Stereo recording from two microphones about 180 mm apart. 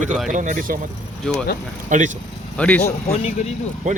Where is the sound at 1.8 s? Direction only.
45° right (ahead or behind).